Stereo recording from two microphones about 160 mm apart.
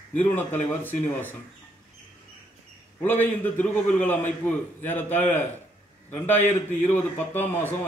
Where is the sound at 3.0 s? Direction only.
10° left (ahead or behind).